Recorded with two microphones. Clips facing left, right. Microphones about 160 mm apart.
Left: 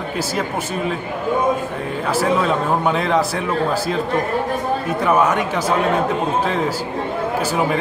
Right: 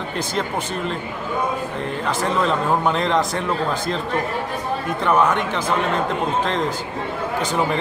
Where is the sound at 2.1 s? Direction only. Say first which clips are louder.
Left 3 dB; 5° left (ahead or behind).